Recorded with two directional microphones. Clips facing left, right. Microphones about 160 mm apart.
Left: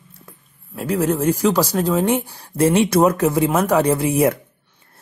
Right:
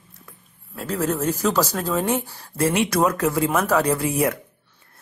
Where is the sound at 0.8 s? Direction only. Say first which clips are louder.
Left 4 dB; 15° left (ahead or behind).